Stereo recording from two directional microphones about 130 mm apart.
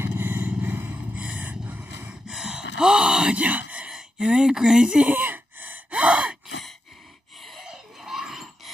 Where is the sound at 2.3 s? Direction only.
5° right (ahead or behind).